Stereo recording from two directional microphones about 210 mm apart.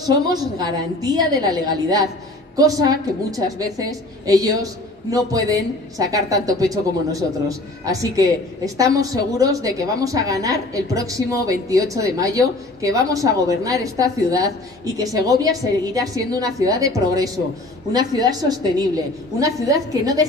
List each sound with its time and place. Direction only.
0.0 s a woman's voice: 20° right (ahead or behind)